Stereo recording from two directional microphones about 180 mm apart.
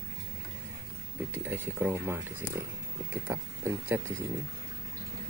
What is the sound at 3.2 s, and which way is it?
Speech, 15° right (ahead or behind).